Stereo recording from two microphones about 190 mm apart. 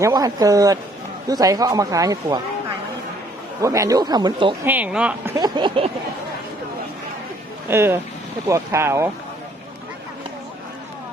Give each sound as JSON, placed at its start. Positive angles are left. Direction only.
{"t": 0.0, "sound": "a man's voice", "side_deg": -20}
{"t": 3.6, "sound": "speech", "side_deg": -15}
{"t": 4.6, "sound": "a man's voice", "side_deg": -10}
{"t": 5.4, "sound": "speech", "side_deg": -25}
{"t": 7.7, "sound": "a man's voice", "side_deg": -10}